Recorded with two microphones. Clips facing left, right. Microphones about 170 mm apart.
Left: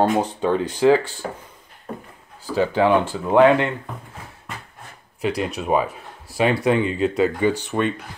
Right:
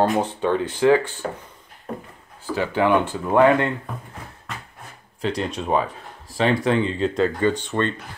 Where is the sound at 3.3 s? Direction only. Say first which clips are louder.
Left 2 dB; 15° left (ahead or behind).